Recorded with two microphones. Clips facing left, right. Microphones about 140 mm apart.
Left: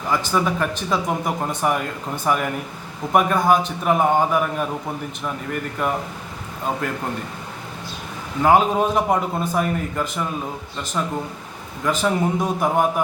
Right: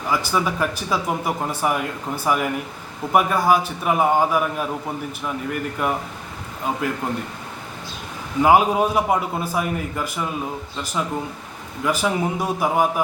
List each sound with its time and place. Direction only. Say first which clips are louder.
0.1 s speech: left 1 dB; 5° right (ahead or behind)
5.8 s a man's voice: left 2 dB; 5° right (ahead or behind)
8.4 s a man's voice: right 1 dB; 10° right (ahead or behind)